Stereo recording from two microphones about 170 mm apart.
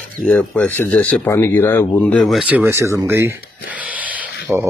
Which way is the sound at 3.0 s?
15° right (ahead or behind).